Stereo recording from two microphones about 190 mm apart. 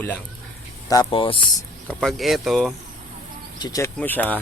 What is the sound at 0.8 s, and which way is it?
Speech, 25° left (ahead or behind).